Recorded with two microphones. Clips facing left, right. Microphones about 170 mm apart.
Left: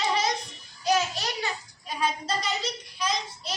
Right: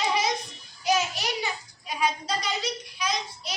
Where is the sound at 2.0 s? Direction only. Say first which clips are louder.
Right 1 dB; 10° right (ahead or behind).